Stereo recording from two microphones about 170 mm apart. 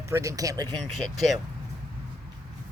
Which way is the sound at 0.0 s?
20° right (ahead or behind).